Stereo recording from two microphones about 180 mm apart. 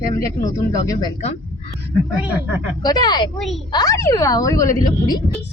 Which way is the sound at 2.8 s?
25° left (ahead or behind).